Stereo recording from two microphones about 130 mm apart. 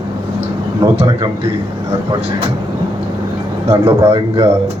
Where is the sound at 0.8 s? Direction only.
40° right (ahead or behind).